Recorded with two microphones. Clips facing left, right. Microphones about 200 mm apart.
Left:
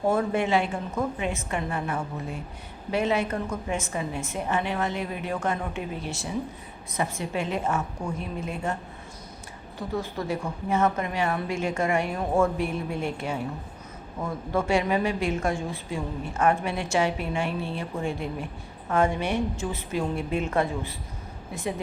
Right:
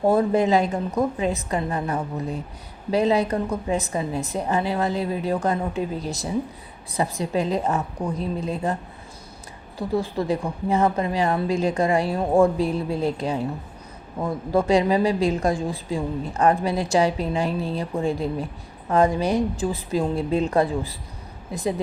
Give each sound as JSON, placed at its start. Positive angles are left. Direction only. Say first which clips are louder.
{"t": 0.1, "sound": "a woman's voice", "louder": "right 5 dB", "side_deg": -35}